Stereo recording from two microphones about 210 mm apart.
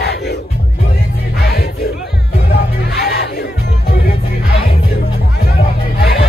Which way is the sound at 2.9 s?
50° left (ahead or behind).